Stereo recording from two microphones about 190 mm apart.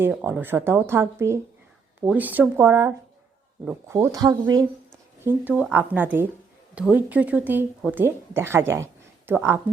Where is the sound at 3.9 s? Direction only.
20° right (ahead or behind).